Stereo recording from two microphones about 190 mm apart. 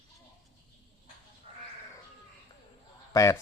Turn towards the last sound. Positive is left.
turn(degrees=15)  # may be behind; listen again after turning